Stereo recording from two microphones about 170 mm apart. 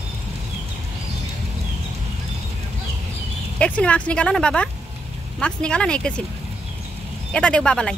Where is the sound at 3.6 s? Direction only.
5° left (ahead or behind).